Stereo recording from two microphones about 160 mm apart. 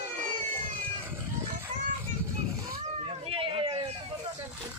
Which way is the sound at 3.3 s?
35° right (ahead or behind).